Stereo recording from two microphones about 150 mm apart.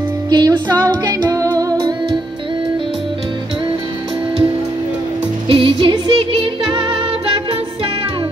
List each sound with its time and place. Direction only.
0.3 s music: 30° right (ahead or behind)
5.5 s music: 35° right (ahead or behind)